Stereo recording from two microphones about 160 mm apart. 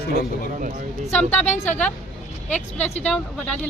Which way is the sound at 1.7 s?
10° left (ahead or behind).